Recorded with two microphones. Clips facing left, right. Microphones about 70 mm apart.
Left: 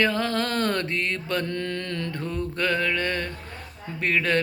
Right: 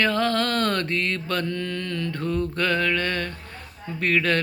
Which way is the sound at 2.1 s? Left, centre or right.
Centre.